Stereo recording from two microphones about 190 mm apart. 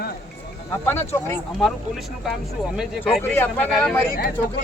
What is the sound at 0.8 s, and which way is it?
Speech, 10° left (ahead or behind).